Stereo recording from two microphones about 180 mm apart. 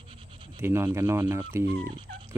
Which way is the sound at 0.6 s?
15° right (ahead or behind).